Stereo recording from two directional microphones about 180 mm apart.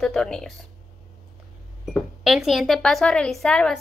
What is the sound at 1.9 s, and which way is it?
Speech, centre (ahead or behind).